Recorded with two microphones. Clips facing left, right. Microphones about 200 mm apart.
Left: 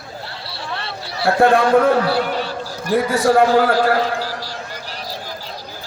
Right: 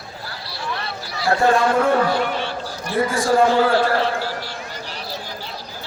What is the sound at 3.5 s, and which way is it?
Speech, 40° left (ahead or behind).